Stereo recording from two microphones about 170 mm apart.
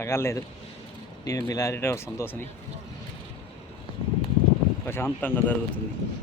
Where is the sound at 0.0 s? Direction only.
15° left (ahead or behind).